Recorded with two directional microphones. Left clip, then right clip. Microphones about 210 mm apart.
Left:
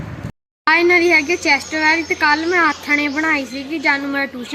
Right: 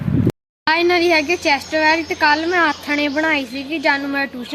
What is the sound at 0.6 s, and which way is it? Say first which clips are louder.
Speech: left 2 dB; 15° right (ahead or behind).